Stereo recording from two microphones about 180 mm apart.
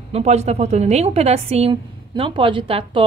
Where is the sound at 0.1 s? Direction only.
35° right (ahead or behind).